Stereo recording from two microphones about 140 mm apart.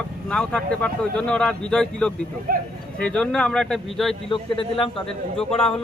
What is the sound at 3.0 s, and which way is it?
Speech, 5° left (ahead or behind).